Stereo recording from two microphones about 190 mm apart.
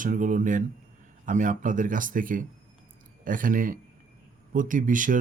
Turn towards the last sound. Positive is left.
turn(degrees=-45)  # may be behind; listen again after turning